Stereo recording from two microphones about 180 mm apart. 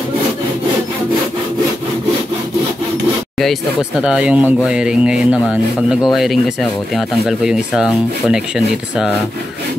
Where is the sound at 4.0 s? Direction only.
5° right (ahead or behind).